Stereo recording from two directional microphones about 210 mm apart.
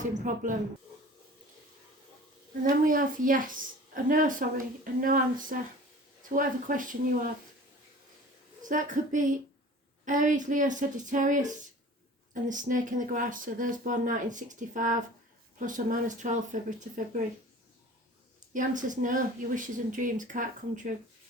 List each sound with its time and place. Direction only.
0.3 s a woman's voice: 40° right (ahead or behind)
2.6 s a woman's voice: 40° right (ahead or behind)
8.6 s a woman's voice: 35° right (ahead or behind)
18.5 s a woman's voice: 40° right (ahead or behind)